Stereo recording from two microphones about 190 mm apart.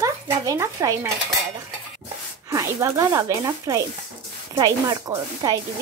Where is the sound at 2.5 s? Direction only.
20° right (ahead or behind).